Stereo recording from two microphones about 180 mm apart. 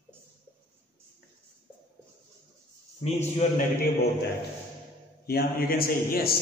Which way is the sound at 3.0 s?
35° left (ahead or behind).